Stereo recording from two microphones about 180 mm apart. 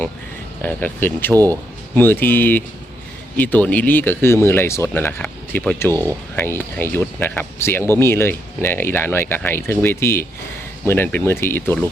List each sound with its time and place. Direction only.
0.6 s speech: 10° left (ahead or behind)
1.3 s speech: 20° right (ahead or behind)
2.0 s speech: 10° left (ahead or behind)
5.9 s speech: 20° right (ahead or behind)
6.3 s speech: 10° left (ahead or behind)